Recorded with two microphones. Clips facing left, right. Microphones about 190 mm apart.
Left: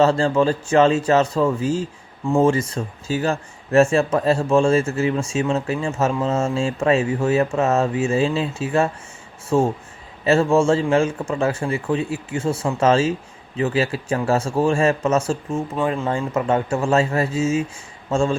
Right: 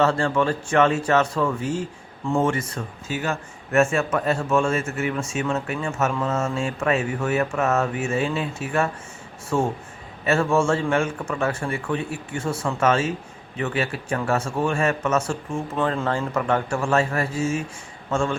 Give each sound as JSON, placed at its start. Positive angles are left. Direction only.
{"t": 0.0, "sound": "speech", "side_deg": 25}
{"t": 10.2, "sound": "speech", "side_deg": 25}
{"t": 15.7, "sound": "speech", "side_deg": 10}